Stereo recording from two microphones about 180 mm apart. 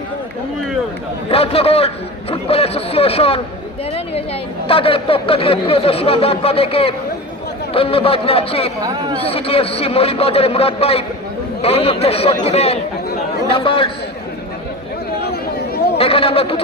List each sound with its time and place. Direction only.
1.3 s speech: 35° left (ahead or behind)
4.7 s speech: 30° left (ahead or behind)
8.8 s speech: 20° right (ahead or behind)
9.1 s a man's voice: 30° left (ahead or behind)
15.2 s a sound: 60° left (ahead or behind)
16.0 s speech: 30° left (ahead or behind)